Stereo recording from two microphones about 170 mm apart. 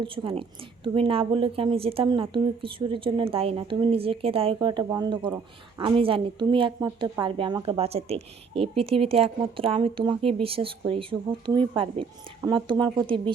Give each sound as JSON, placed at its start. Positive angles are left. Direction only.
{"t": 0.0, "sound": "a woman's voice", "side_deg": -30}
{"t": 6.0, "sound": "a woman's voice", "side_deg": -30}